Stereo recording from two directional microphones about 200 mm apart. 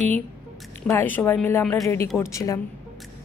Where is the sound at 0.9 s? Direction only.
10° left (ahead or behind).